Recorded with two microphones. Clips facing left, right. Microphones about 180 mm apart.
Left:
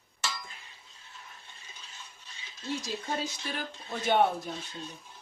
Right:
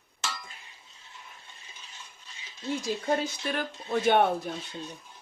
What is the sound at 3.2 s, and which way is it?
Speech, 60° right (ahead or behind).